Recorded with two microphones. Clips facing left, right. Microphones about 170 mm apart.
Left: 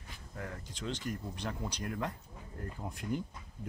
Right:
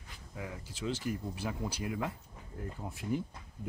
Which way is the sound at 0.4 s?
5° right (ahead or behind).